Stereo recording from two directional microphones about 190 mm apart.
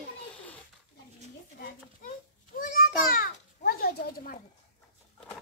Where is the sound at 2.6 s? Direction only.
45° left (ahead or behind).